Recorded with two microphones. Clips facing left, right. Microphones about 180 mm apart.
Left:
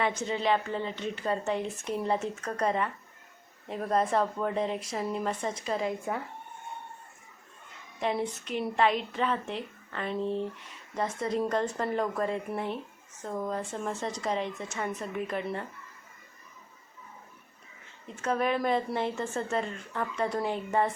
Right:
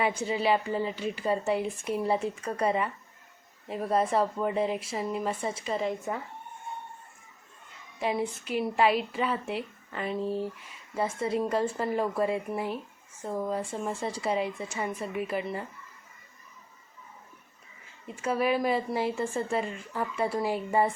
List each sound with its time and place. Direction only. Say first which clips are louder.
0.3 s speech: right 2 dB; 10° right (ahead or behind)
7.9 s speech: right 1 dB; 5° right (ahead or behind)
18.1 s speech: right 1 dB; 10° right (ahead or behind)